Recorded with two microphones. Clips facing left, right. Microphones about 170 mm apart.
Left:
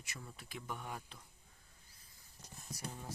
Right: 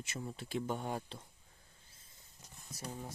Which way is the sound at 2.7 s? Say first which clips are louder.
Right 2 dB; 25° right (ahead or behind).